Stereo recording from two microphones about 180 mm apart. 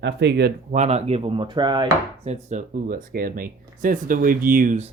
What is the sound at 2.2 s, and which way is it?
Speech, 40° right (ahead or behind).